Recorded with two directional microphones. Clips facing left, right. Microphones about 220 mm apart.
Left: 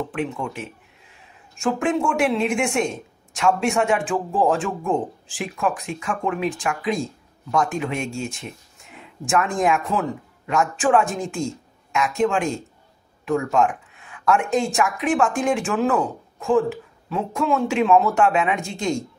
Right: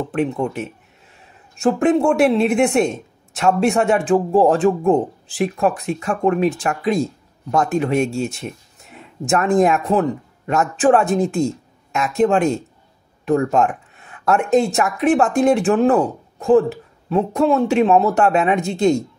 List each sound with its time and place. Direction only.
0.1 s speech: 40° right (ahead or behind)